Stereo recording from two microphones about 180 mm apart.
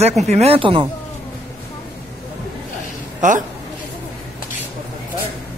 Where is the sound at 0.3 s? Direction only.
35° right (ahead or behind).